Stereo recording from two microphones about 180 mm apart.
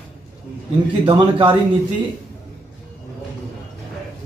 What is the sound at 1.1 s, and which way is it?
Speech, 25° right (ahead or behind).